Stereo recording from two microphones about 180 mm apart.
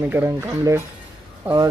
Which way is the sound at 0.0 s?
10° right (ahead or behind).